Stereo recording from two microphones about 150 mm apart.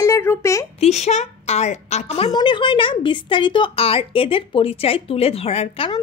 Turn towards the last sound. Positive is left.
turn(degrees=40)  # may be behind; listen again after turning